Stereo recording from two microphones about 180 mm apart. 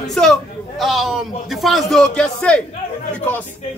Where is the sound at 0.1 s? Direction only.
Centre (ahead or behind).